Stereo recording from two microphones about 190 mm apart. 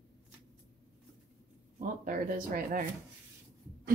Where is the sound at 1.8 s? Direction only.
45° right (ahead or behind).